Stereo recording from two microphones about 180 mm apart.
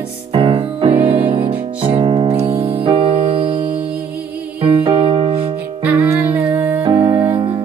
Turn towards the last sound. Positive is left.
turn(degrees=-25)  # may be behind; listen again after turning